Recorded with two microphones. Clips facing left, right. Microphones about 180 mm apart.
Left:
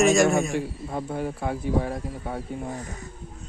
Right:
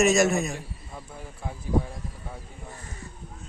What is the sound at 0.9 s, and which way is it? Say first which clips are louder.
Speech: left 14 dB; 70° left (ahead or behind).